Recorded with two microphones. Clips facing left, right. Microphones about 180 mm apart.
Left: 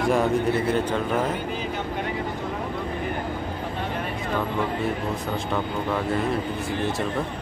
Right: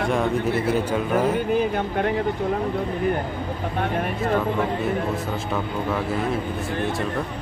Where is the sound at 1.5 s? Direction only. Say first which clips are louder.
Right 7 dB; 55° right (ahead or behind).